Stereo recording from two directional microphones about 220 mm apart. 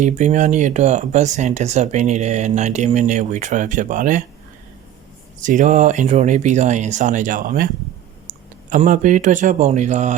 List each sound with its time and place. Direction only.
0.0 s speech: 35° right (ahead or behind)
5.4 s speech: 35° right (ahead or behind)